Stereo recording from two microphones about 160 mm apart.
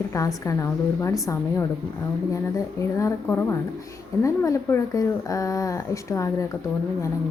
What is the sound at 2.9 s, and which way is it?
Speech, 15° left (ahead or behind).